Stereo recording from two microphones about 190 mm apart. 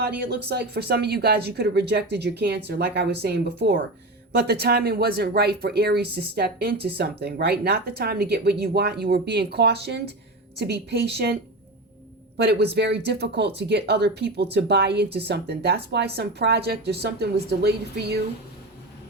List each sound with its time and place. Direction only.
0.2 s speech: 60° right (ahead or behind)
12.4 s speech: 60° right (ahead or behind)